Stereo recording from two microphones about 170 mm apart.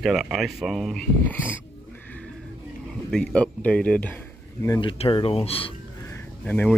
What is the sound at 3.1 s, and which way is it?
Speech, 5° left (ahead or behind).